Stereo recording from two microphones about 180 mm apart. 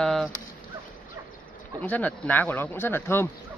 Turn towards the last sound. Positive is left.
turn(degrees=15)  # may be behind; listen again after turning